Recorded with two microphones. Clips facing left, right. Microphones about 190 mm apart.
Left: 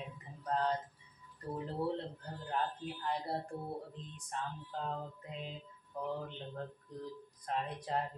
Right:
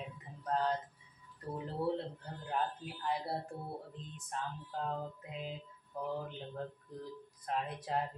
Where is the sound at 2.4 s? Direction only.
5° right (ahead or behind).